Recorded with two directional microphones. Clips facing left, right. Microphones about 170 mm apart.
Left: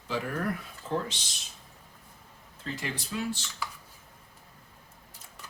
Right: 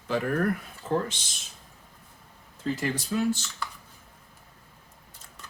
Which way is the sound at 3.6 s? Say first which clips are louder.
Right 1 dB; 5° left (ahead or behind).